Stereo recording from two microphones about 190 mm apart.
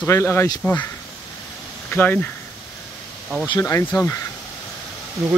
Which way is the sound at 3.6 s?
15° left (ahead or behind).